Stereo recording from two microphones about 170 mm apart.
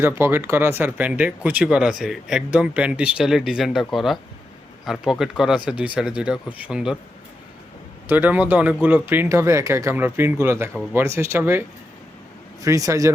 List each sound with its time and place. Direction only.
0.0 s speech: 15° right (ahead or behind)
8.0 s speech: 10° right (ahead or behind)
12.6 s speech: 20° right (ahead or behind)